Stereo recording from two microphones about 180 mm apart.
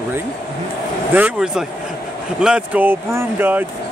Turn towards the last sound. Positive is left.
turn(degrees=-10)  # may be behind; listen again after turning